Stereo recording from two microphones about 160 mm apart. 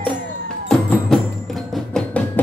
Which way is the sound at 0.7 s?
5° left (ahead or behind).